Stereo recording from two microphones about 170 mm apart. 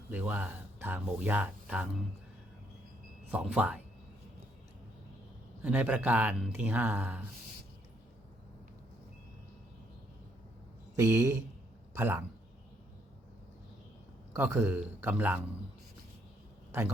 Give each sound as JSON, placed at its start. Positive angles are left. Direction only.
{"t": 0.1, "sound": "speech", "side_deg": -10}
{"t": 3.3, "sound": "speech", "side_deg": -10}
{"t": 5.6, "sound": "speech", "side_deg": -10}
{"t": 10.9, "sound": "speech", "side_deg": -15}
{"t": 14.3, "sound": "speech", "side_deg": -15}